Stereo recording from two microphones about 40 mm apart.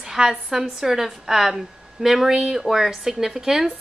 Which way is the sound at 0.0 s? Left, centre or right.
Centre.